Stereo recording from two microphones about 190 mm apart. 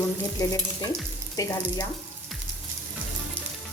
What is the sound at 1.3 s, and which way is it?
Frying, 20° left (ahead or behind).